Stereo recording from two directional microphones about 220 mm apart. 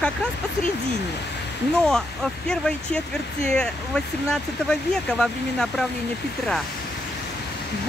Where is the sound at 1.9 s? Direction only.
5° left (ahead or behind).